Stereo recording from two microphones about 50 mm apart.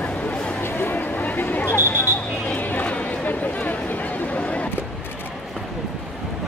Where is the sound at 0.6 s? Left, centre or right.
Left.